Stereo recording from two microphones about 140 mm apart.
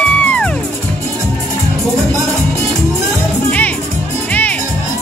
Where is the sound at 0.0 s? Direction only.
10° left (ahead or behind).